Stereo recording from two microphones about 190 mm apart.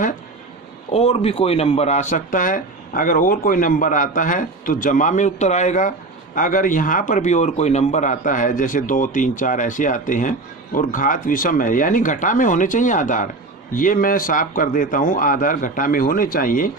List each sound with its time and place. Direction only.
0.9 s speech: 30° left (ahead or behind)